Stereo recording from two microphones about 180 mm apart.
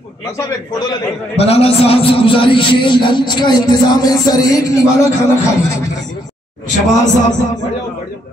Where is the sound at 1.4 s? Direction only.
35° left (ahead or behind).